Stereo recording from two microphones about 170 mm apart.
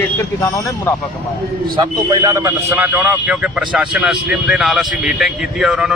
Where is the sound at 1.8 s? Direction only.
20° right (ahead or behind).